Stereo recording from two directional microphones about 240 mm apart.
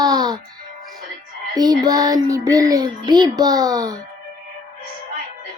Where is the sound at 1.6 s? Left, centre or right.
Centre.